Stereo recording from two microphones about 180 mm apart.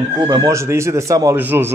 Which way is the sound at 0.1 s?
20° right (ahead or behind).